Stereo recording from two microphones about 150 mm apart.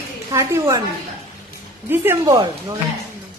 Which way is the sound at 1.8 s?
15° right (ahead or behind).